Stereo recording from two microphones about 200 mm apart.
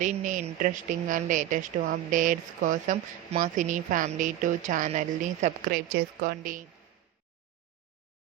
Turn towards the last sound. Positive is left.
turn(degrees=-45)  # may be behind; listen again after turning